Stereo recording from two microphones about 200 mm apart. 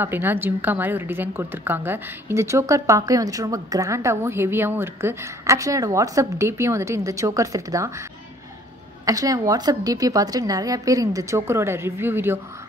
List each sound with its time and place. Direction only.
0.0 s a woman's voice: 10° right (ahead or behind)
9.0 s a woman's voice: 15° right (ahead or behind)